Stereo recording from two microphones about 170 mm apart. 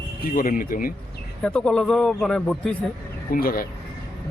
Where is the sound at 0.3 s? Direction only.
55° left (ahead or behind).